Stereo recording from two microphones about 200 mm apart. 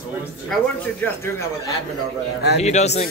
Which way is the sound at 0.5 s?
Centre (ahead or behind).